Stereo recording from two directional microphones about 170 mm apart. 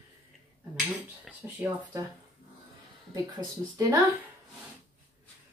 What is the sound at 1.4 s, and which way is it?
Speech, 15° right (ahead or behind).